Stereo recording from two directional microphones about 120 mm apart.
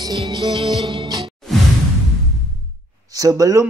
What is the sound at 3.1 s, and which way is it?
Speech, 30° right (ahead or behind).